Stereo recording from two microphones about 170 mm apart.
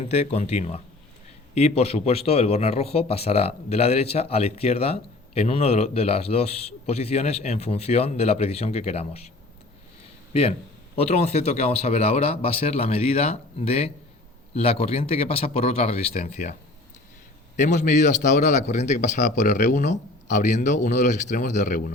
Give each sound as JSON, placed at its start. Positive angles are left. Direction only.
{"t": 0.0, "sound": "speech", "side_deg": 40}
{"t": 10.3, "sound": "speech", "side_deg": 35}
{"t": 17.6, "sound": "a man's voice", "side_deg": 45}